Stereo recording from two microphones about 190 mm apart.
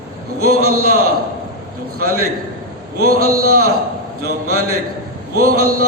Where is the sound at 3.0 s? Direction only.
55° right (ahead or behind).